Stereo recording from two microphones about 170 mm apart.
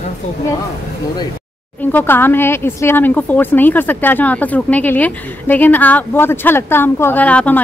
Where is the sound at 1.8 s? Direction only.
10° left (ahead or behind).